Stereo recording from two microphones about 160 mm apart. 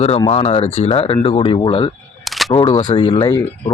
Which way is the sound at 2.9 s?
35° left (ahead or behind).